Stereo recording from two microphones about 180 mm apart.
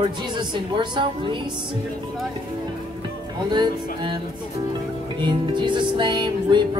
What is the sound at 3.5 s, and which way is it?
Speech, 25° right (ahead or behind).